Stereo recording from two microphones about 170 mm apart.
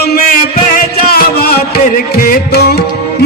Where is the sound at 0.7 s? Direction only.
60° left (ahead or behind).